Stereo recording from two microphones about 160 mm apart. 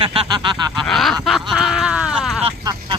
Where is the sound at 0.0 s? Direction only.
30° right (ahead or behind).